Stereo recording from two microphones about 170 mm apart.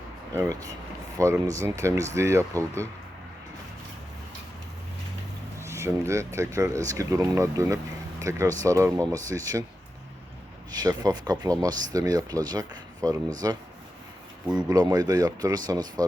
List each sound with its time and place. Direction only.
0.3 s speech: 20° right (ahead or behind)
5.6 s speech: 15° right (ahead or behind)
10.7 s speech: 25° right (ahead or behind)
14.7 s speech: 20° right (ahead or behind)